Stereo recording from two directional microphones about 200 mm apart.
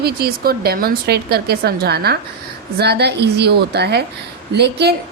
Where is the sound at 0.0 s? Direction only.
50° right (ahead or behind).